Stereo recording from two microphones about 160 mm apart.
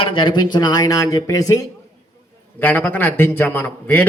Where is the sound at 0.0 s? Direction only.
30° left (ahead or behind).